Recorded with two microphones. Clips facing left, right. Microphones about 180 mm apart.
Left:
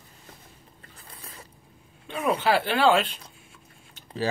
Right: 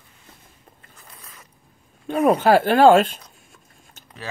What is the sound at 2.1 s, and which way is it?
Speech, 50° right (ahead or behind).